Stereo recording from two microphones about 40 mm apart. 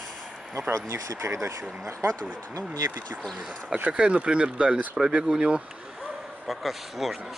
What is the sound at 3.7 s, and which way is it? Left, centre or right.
Speech, right.